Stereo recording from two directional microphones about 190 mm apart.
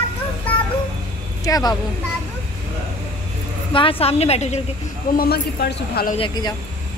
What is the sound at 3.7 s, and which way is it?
Speech, 30° left (ahead or behind).